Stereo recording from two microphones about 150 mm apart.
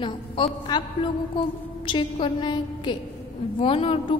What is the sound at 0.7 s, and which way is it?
Speech, 30° left (ahead or behind).